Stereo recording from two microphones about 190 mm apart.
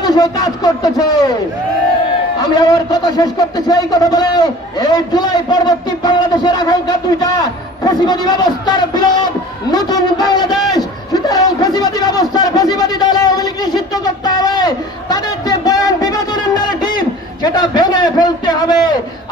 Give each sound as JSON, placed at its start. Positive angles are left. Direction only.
{"t": 0.0, "sound": "a man's voice", "side_deg": 20}
{"t": 2.5, "sound": "a man's voice", "side_deg": 20}